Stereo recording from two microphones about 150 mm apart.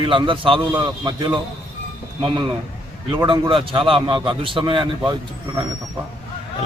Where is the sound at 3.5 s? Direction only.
35° right (ahead or behind).